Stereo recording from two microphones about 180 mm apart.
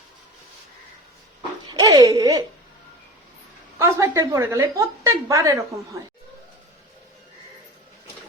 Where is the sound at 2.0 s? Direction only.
20° right (ahead or behind).